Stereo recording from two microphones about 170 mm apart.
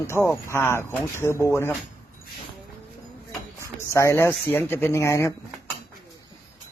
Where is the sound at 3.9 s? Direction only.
15° left (ahead or behind).